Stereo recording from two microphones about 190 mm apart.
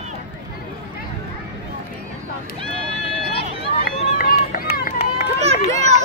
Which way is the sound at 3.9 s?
50° left (ahead or behind).